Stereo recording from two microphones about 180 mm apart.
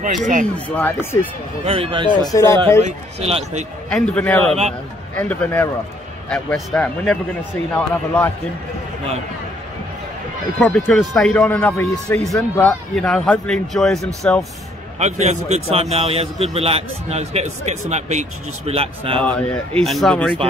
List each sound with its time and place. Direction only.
0.7 s a man's voice: 10° left (ahead or behind)
1.6 s a man's voice: 30° right (ahead or behind)
2.3 s a man's voice: 15° left (ahead or behind)
2.8 s a man's voice: 35° right (ahead or behind)
3.9 s a man's voice: 5° left (ahead or behind)
10.6 s a man's voice: 5° left (ahead or behind)
12.4 s speech: 5° left (ahead or behind)
15.0 s a man's voice: 40° right (ahead or behind)
19.2 s a man's voice: 5° left (ahead or behind)